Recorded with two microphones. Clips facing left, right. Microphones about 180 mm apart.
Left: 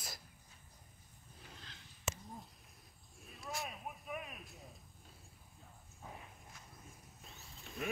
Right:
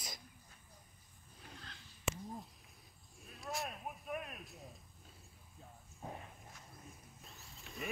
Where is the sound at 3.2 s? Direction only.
Centre (ahead or behind).